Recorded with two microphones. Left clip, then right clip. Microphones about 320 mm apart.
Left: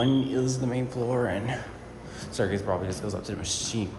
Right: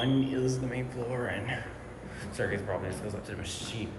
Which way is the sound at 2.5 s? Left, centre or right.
Centre.